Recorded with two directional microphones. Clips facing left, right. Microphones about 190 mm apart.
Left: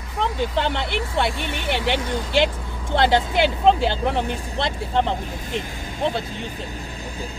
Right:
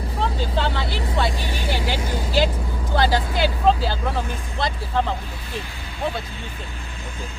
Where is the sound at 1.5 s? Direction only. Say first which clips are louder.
Left 2 dB; 65° left (ahead or behind).